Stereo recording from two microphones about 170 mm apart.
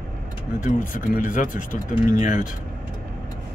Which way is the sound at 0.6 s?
50° left (ahead or behind).